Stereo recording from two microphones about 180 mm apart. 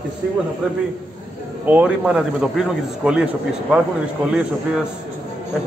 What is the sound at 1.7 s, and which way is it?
A man's voice, 5° right (ahead or behind).